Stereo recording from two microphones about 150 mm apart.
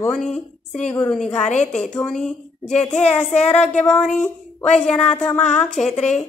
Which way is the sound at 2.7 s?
50° left (ahead or behind).